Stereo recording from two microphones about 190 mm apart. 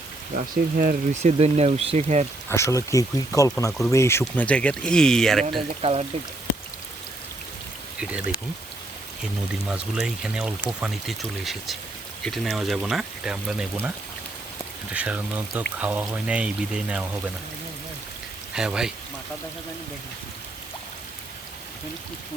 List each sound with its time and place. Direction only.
0.3 s speech: 50° right (ahead or behind)
1.2 s speech: 35° right (ahead or behind)
2.5 s speech: 15° left (ahead or behind)
3.7 s speech: centre (ahead or behind)
3.9 s speech: 15° left (ahead or behind)
5.8 s speech: 30° right (ahead or behind)
7.9 s speech: 5° right (ahead or behind)
9.6 s speech: 5° right (ahead or behind)
14.9 s speech: 5° right (ahead or behind)
18.5 s speech: 5° right (ahead or behind)